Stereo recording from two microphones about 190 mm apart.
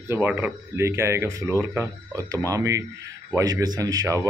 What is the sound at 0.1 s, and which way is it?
A man's voice, 10° right (ahead or behind).